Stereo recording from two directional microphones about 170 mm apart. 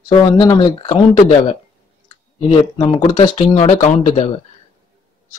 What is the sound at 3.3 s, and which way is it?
Speech, 40° left (ahead or behind).